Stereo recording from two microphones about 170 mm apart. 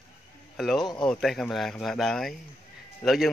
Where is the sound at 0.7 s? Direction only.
25° left (ahead or behind).